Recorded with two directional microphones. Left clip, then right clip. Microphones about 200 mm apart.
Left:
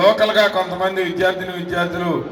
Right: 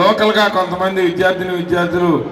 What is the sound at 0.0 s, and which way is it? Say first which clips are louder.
A man's voice: right 1 dB; 40° left (ahead or behind).